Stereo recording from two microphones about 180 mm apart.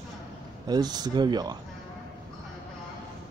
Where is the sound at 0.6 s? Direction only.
20° right (ahead or behind).